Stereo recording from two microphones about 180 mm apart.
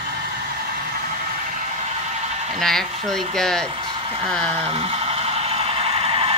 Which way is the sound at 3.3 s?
5° left (ahead or behind).